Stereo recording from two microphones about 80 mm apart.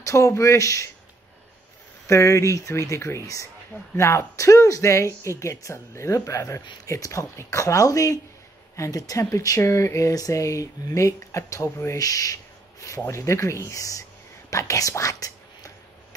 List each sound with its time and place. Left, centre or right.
0.0 s speech: left
2.0 s speech: left
14.5 s whispering: left